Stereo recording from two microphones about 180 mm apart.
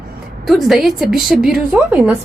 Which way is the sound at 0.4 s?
Centre (ahead or behind).